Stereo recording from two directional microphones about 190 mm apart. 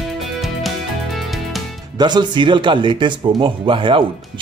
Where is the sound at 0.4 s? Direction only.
Centre (ahead or behind).